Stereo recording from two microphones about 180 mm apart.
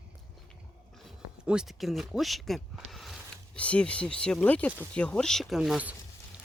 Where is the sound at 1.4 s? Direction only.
5° right (ahead or behind).